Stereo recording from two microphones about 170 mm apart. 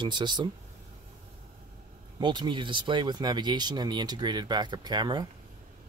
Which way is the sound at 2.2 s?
25° right (ahead or behind).